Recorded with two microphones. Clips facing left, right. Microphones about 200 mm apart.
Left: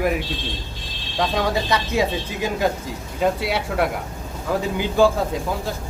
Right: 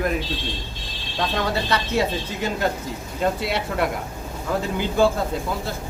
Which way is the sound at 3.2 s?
10° left (ahead or behind).